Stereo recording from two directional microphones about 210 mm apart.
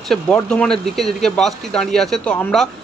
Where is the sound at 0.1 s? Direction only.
5° left (ahead or behind).